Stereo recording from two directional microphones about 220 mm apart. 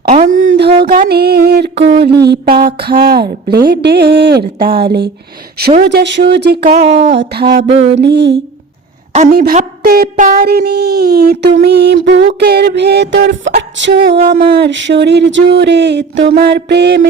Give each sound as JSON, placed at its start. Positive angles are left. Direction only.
{"t": 0.1, "sound": "a sound", "side_deg": -35}
{"t": 0.9, "sound": "speech", "side_deg": -45}
{"t": 6.8, "sound": "speech", "side_deg": -35}
{"t": 7.2, "sound": "speech", "side_deg": -45}
{"t": 9.1, "sound": "speech", "side_deg": -40}
{"t": 14.0, "sound": "speech", "side_deg": -45}